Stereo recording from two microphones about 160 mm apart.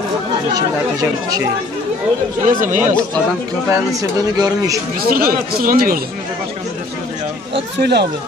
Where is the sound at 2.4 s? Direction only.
55° right (ahead or behind).